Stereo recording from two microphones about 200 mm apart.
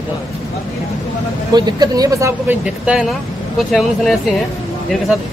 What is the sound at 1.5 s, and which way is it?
Speech, 20° right (ahead or behind).